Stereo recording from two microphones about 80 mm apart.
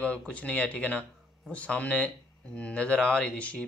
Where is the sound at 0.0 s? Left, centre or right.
Centre.